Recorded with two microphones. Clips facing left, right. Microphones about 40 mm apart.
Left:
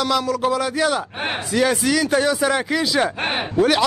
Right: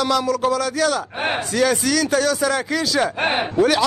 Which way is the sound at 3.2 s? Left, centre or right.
Centre.